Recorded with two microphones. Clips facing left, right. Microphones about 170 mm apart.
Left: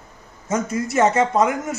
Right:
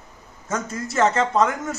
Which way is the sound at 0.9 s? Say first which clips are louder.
Left 2 dB; 20° left (ahead or behind).